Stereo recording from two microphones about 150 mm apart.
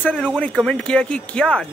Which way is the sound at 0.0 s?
10° left (ahead or behind).